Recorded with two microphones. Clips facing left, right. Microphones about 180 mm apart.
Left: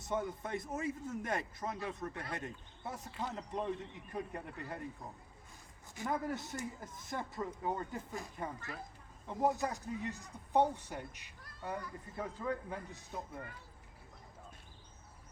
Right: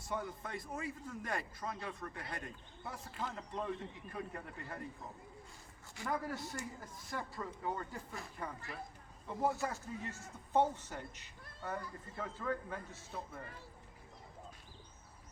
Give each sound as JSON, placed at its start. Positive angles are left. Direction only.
{"t": 0.0, "sound": "speech", "side_deg": 20}
{"t": 6.0, "sound": "speech", "side_deg": 20}